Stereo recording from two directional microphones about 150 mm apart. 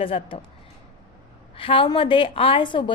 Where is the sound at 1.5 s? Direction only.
35° left (ahead or behind).